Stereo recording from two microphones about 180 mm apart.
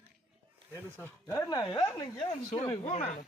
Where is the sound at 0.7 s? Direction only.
10° left (ahead or behind).